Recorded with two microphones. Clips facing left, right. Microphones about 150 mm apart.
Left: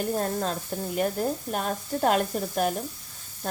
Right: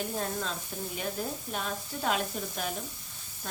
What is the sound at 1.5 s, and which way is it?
Sizzle, 50° left (ahead or behind).